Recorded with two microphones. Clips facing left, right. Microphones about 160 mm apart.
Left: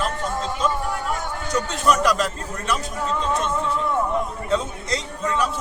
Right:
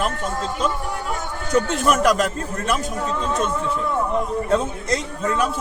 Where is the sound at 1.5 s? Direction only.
50° right (ahead or behind).